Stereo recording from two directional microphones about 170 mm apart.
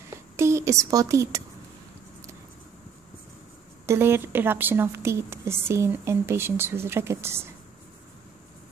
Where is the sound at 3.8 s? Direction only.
15° right (ahead or behind).